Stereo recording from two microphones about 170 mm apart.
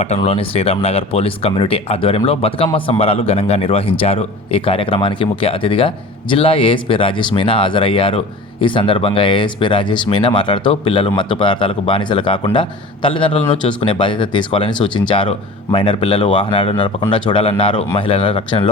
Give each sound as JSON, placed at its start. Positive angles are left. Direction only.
{"t": 0.2, "sound": "speech", "side_deg": 35}